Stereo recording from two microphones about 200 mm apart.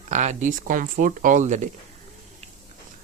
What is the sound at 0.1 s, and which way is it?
Speech, 35° right (ahead or behind).